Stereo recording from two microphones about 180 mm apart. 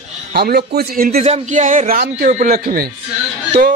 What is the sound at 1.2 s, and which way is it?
Speech, 40° right (ahead or behind).